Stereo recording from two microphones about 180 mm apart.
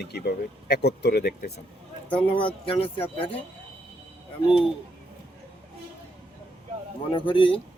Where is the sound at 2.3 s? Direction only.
30° left (ahead or behind).